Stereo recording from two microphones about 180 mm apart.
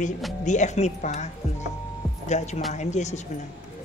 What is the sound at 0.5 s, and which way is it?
Speech, 40° left (ahead or behind).